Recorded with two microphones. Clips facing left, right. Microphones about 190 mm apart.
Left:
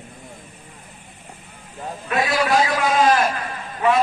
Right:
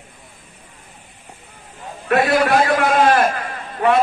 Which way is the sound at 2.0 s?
60° right (ahead or behind).